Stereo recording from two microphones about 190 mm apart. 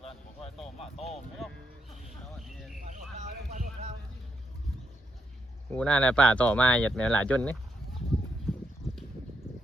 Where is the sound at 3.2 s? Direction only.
40° right (ahead or behind).